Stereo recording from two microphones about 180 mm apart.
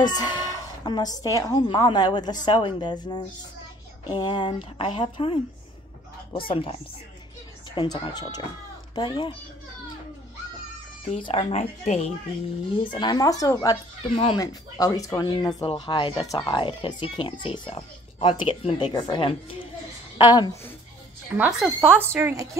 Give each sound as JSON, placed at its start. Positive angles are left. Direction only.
{"t": 0.0, "sound": "a woman's voice", "side_deg": 25}
{"t": 11.1, "sound": "speech", "side_deg": 30}
{"t": 12.9, "sound": "speech", "side_deg": 25}
{"t": 14.1, "sound": "speech", "side_deg": 30}
{"t": 14.4, "sound": "speech", "side_deg": 20}
{"t": 21.4, "sound": "speech", "side_deg": -5}
{"t": 22.0, "sound": "a woman's voice", "side_deg": -15}